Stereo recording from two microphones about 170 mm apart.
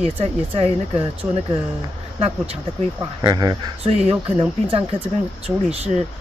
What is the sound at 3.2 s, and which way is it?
Speech, 20° right (ahead or behind).